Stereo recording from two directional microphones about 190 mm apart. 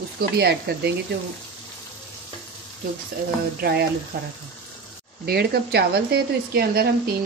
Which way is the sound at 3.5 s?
55° right (ahead or behind).